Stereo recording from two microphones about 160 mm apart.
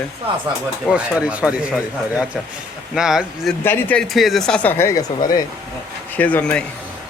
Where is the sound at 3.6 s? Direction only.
15° left (ahead or behind).